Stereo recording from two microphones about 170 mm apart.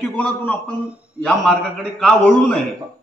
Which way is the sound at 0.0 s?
5° left (ahead or behind).